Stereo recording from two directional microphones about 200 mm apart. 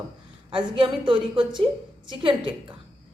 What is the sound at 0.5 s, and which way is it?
A woman's voice, 25° right (ahead or behind).